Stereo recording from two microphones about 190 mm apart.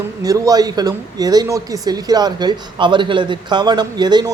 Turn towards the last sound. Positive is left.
turn(degrees=-20)  # may be behind; listen again after turning